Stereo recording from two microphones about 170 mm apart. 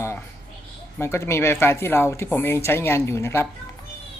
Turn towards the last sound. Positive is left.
turn(degrees=15)  # may be behind; listen again after turning